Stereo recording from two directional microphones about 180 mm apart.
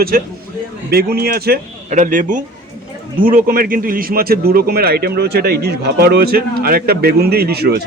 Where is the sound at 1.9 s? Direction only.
45° right (ahead or behind).